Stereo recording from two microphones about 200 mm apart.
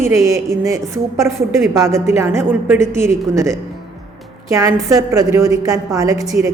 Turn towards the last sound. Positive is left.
turn(degrees=-15)  # may be behind; listen again after turning